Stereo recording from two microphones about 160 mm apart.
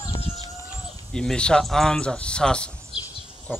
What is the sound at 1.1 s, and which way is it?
Speech, 5° left (ahead or behind).